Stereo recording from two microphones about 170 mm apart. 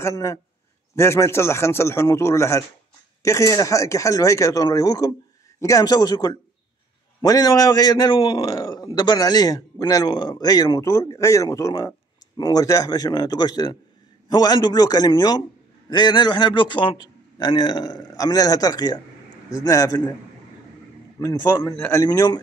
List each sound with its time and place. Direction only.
0.0 s a man's voice: 20° left (ahead or behind)
21.2 s a man's voice: 20° left (ahead or behind)